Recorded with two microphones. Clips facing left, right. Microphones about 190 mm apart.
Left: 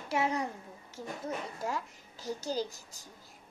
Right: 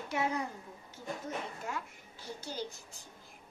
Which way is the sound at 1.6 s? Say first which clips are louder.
Left 4 dB; 40° left (ahead or behind).